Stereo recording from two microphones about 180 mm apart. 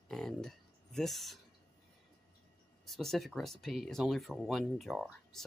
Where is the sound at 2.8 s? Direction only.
Centre (ahead or behind).